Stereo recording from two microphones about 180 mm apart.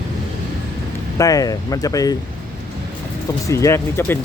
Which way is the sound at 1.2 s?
20° left (ahead or behind).